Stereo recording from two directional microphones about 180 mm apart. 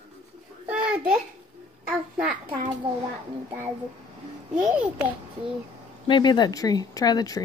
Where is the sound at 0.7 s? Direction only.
5° right (ahead or behind).